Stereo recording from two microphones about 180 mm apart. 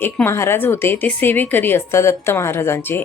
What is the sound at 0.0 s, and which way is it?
Speech, 15° left (ahead or behind).